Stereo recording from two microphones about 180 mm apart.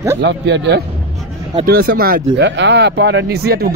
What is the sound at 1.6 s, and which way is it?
Speech, 55° right (ahead or behind).